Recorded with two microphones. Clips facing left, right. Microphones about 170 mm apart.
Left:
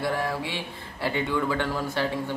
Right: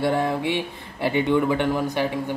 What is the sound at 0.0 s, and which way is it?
Speech, 25° right (ahead or behind).